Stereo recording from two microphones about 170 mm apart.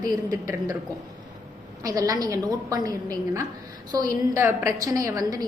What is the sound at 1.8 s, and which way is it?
A woman's voice, 20° right (ahead or behind).